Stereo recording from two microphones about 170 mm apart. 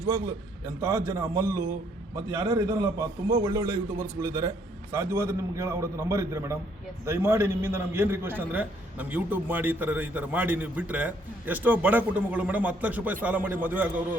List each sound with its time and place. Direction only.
0.1 s a man's voice: 15° right (ahead or behind)